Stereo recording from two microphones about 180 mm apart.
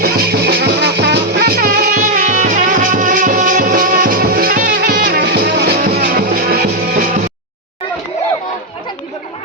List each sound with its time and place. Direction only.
0.0 s music: 60° right (ahead or behind)